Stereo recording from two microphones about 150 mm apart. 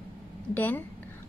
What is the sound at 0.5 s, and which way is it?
Speech, 10° left (ahead or behind).